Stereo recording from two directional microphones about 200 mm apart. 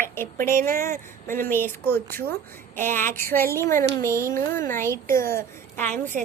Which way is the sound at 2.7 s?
10° left (ahead or behind).